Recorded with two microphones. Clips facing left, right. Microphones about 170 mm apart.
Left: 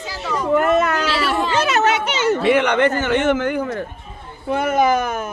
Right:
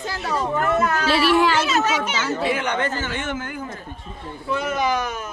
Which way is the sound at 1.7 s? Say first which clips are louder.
Left 3 dB; 65° left (ahead or behind).